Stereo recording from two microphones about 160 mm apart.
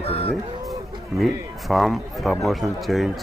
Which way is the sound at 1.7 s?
Centre (ahead or behind).